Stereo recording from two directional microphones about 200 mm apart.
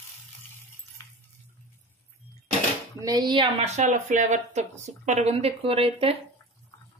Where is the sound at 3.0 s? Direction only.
20° right (ahead or behind).